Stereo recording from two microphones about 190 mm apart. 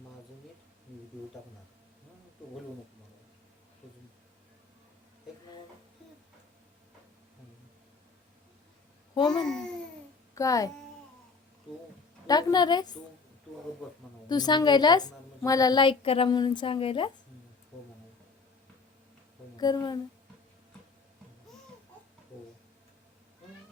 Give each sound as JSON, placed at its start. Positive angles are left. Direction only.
{"t": 9.1, "sound": "a child's voice", "side_deg": 20}
{"t": 12.3, "sound": "a woman's voice", "side_deg": 20}
{"t": 14.3, "sound": "a woman's voice", "side_deg": 20}
{"t": 19.5, "sound": "speech", "side_deg": 20}